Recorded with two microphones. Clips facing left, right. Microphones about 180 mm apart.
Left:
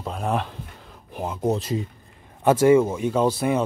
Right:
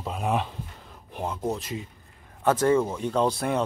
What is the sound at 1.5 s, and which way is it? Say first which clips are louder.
Speech: left 8 dB; 35° left (ahead or behind).